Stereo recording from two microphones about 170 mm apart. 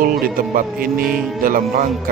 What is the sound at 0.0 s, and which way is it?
Speech, 60° right (ahead or behind).